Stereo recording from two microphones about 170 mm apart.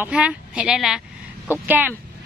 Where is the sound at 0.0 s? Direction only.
5° right (ahead or behind).